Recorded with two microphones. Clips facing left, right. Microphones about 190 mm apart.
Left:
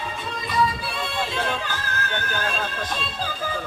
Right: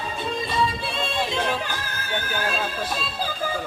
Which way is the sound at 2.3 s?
10° right (ahead or behind).